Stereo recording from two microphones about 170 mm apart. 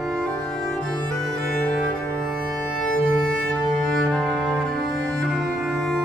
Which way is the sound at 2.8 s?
5° left (ahead or behind).